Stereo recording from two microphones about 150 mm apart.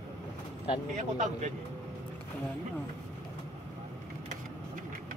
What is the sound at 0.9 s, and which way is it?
Speech, 55° right (ahead or behind).